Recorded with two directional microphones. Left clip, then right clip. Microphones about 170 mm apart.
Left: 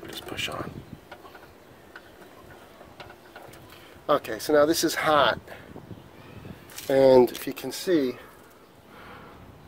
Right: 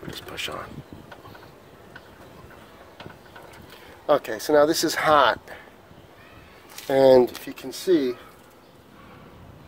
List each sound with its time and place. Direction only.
0.1 s a sound: centre (ahead or behind)
4.0 s speech: centre (ahead or behind)
6.9 s speech: 15° left (ahead or behind)
7.4 s speech: 65° left (ahead or behind)